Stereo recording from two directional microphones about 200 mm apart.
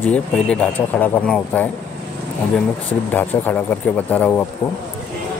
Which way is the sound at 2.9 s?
10° left (ahead or behind).